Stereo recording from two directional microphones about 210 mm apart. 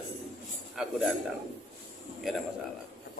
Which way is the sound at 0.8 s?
5° right (ahead or behind).